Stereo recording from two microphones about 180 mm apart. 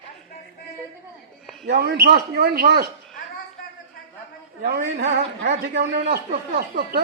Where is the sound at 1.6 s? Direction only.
65° right (ahead or behind).